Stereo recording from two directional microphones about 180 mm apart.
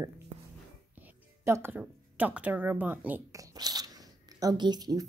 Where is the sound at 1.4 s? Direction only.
15° right (ahead or behind).